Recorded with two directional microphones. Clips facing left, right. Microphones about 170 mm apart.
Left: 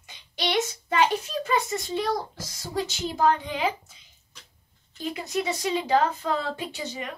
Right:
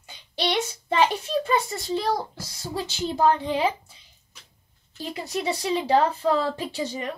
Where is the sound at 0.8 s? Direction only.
30° right (ahead or behind).